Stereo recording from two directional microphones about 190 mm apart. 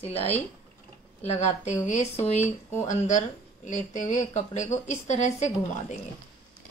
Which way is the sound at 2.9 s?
40° left (ahead or behind).